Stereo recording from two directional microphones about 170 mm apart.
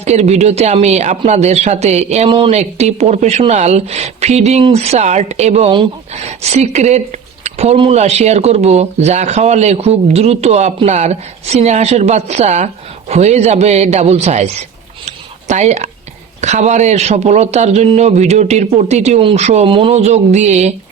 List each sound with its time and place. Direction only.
0.0 s speech: 40° right (ahead or behind)
15.0 s a sound: 45° right (ahead or behind)
16.4 s speech: 45° right (ahead or behind)